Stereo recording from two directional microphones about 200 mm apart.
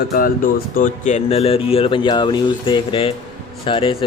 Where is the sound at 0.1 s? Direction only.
45° left (ahead or behind).